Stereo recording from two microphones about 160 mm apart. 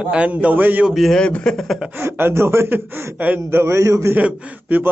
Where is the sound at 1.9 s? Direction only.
15° right (ahead or behind).